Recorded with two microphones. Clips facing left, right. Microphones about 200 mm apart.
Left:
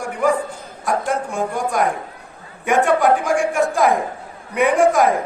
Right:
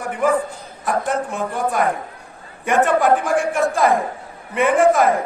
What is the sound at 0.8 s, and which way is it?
A man's voice, centre (ahead or behind).